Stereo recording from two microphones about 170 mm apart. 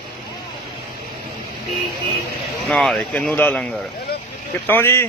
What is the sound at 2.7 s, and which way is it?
Speech, 5° left (ahead or behind).